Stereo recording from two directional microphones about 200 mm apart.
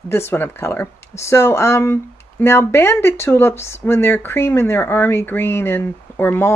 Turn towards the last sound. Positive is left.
turn(degrees=10)  # may be behind; listen again after turning